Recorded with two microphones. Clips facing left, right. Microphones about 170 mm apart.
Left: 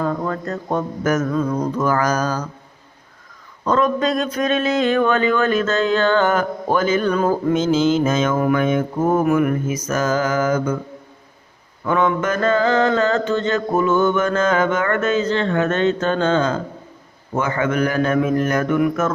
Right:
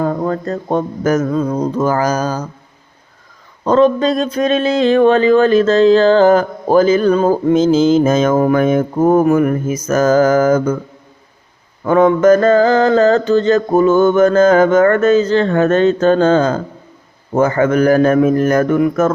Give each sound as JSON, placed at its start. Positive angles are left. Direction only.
{"t": 0.0, "sound": "a sound", "side_deg": -35}
{"t": 3.6, "sound": "speech", "side_deg": -30}
{"t": 11.9, "sound": "speech", "side_deg": -35}